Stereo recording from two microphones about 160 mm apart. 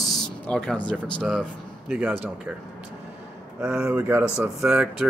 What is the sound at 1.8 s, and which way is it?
Speech, 10° right (ahead or behind).